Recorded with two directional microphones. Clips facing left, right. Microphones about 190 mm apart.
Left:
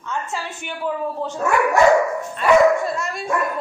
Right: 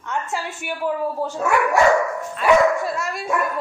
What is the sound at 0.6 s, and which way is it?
Speech, 10° right (ahead or behind).